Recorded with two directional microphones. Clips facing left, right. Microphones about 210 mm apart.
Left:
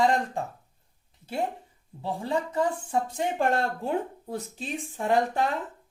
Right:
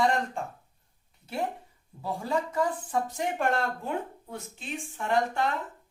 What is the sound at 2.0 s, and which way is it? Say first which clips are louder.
Speech: left 1 dB; 25° left (ahead or behind).